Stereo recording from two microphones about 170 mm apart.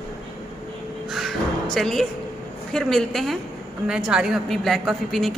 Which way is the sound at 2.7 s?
Centre (ahead or behind).